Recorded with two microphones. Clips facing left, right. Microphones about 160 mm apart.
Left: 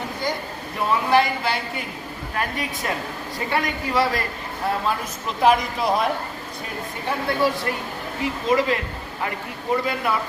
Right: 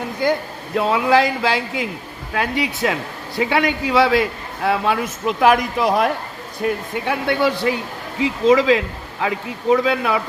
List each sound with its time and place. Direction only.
0.8 s speech: 90° right
5.4 s speech: 65° right (ahead or behind)
8.2 s speech: 90° right